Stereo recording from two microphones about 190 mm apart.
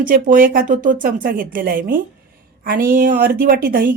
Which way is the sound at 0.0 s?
45° right (ahead or behind).